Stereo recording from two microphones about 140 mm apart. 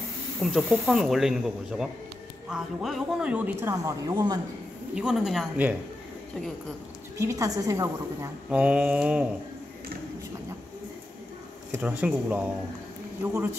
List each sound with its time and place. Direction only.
0.4 s speech: centre (ahead or behind); by 4.4 s 25° right (ahead or behind)
4.9 s speech: 5° right (ahead or behind)
7.2 s a woman's voice: 25° right (ahead or behind)
8.5 s speech: 10° right (ahead or behind)
11.7 s speech: 10° right (ahead or behind)